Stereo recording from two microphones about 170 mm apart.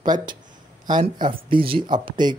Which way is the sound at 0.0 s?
25° right (ahead or behind).